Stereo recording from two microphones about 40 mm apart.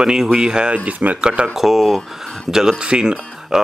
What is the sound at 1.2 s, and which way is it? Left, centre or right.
Speech, right.